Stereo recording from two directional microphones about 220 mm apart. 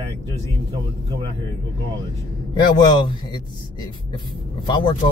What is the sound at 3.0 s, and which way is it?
A man's voice, 20° left (ahead or behind).